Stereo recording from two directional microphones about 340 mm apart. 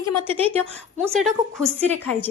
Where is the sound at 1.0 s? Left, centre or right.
Centre.